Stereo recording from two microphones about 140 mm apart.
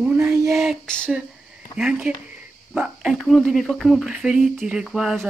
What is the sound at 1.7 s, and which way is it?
Speech, 5° right (ahead or behind).